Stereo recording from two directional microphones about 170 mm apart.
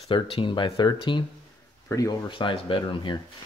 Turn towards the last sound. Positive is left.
turn(degrees=30)  # may be behind; listen again after turning